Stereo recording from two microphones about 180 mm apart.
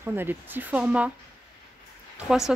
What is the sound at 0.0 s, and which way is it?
Speech, 10° right (ahead or behind).